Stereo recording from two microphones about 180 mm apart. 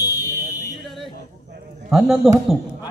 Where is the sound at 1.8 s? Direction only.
5° right (ahead or behind).